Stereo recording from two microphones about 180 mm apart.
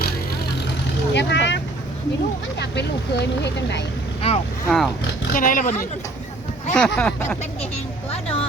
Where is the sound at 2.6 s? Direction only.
70° left (ahead or behind).